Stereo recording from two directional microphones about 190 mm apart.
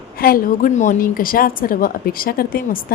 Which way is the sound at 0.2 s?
50° left (ahead or behind).